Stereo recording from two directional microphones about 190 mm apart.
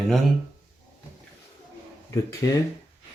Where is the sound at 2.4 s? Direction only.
15° left (ahead or behind).